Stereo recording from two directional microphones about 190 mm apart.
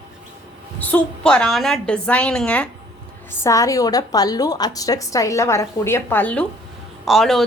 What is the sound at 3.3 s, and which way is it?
A woman's voice, 15° left (ahead or behind).